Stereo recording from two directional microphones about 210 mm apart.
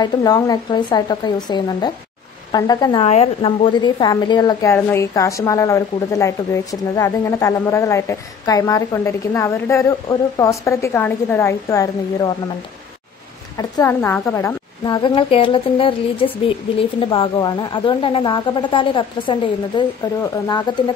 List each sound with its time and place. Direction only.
0.0 s a woman's voice: 20° left (ahead or behind)
13.6 s a woman's voice: 15° left (ahead or behind)
20.7 s a woman's voice: 20° left (ahead or behind)